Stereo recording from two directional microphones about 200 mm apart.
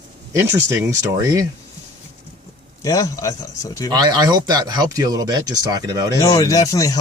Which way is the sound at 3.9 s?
20° right (ahead or behind).